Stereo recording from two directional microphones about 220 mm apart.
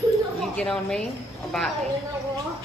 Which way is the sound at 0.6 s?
5° left (ahead or behind).